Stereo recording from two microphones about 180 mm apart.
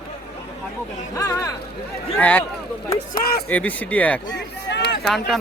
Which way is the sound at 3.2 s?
55° left (ahead or behind).